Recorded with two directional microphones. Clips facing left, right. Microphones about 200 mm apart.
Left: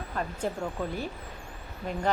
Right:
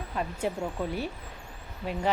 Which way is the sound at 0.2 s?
5° right (ahead or behind).